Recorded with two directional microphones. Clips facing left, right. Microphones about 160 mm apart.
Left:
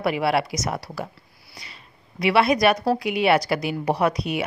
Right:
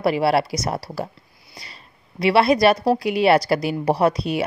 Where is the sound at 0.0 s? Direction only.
35° right (ahead or behind).